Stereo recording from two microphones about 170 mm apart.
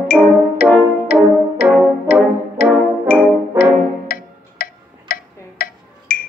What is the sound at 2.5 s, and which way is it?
Music, 55° left (ahead or behind).